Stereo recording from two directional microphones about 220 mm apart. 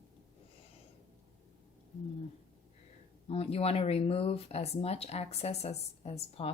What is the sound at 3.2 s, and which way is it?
Speech, 25° left (ahead or behind).